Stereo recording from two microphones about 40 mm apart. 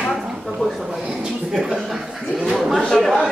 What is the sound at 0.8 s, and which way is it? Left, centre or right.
A woman's voice, centre.